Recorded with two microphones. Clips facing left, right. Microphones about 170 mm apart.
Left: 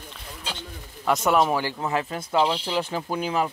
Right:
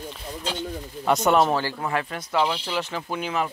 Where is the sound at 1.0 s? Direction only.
Centre (ahead or behind).